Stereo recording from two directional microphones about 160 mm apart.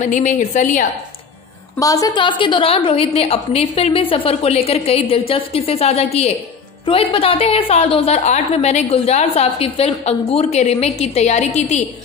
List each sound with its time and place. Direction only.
0.0 s a woman's voice: 50° left (ahead or behind)
1.8 s a woman's voice: 20° left (ahead or behind); by 11.8 s 45° left (ahead or behind)